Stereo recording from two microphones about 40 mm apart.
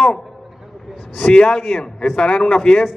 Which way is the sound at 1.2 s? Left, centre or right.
Left.